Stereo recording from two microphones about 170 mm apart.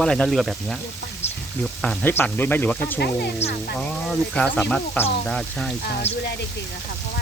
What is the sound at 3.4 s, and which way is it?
Speech, 40° left (ahead or behind).